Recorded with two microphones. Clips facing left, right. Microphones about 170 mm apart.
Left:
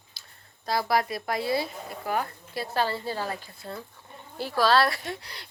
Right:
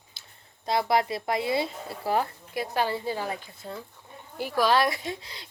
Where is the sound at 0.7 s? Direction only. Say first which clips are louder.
Right 1 dB; 25° right (ahead or behind).